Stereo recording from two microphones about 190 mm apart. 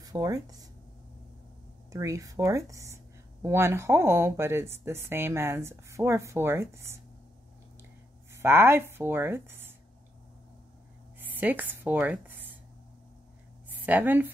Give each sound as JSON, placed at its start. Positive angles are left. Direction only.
{"t": 0.0, "sound": "speech", "side_deg": -20}
{"t": 1.9, "sound": "speech", "side_deg": -15}
{"t": 8.3, "sound": "speech", "side_deg": -10}
{"t": 11.1, "sound": "speech", "side_deg": -10}
{"t": 13.7, "sound": "a woman's voice", "side_deg": -10}